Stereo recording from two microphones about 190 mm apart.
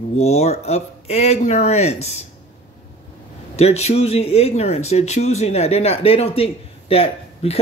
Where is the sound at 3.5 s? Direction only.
35° left (ahead or behind).